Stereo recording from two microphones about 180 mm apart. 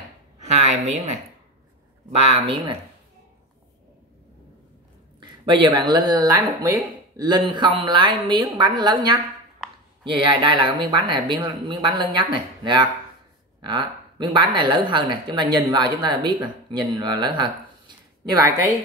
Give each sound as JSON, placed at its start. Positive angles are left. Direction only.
{"t": 0.6, "sound": "speech", "side_deg": -40}
{"t": 5.2, "sound": "speech", "side_deg": -25}